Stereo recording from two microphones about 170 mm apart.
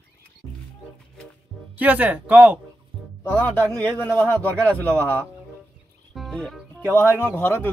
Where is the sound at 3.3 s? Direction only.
10° left (ahead or behind).